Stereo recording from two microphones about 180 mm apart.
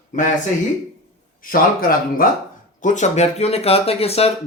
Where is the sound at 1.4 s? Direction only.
50° left (ahead or behind).